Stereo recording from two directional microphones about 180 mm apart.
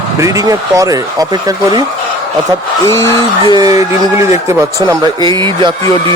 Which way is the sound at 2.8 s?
15° left (ahead or behind).